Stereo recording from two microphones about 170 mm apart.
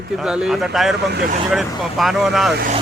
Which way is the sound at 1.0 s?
75° right (ahead or behind).